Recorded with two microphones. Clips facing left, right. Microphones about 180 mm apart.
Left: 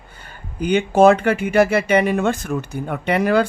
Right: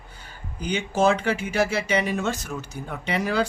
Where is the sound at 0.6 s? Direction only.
60° left (ahead or behind).